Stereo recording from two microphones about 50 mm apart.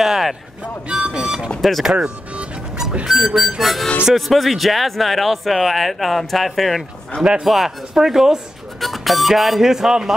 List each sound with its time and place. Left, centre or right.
0.0 s a sound: centre
0.8 s music: centre
1.6 s speech: centre
1.9 s speech: centre
3.1 s a man's voice: centre